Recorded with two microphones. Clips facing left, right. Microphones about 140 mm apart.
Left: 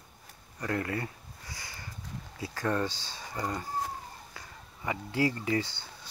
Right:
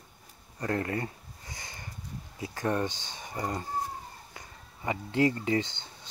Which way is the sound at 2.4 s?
20° right (ahead or behind).